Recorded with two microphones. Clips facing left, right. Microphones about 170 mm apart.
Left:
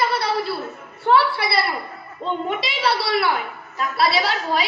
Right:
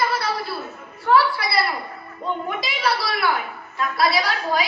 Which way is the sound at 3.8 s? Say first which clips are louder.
Left 1 dB; 25° left (ahead or behind).